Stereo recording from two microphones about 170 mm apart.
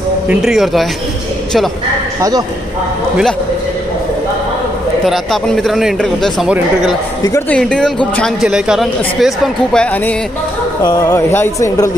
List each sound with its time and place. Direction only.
0.3 s speech: centre (ahead or behind)
5.0 s speech: centre (ahead or behind)
7.2 s speech: 15° left (ahead or behind)
10.8 s speech: 25° left (ahead or behind)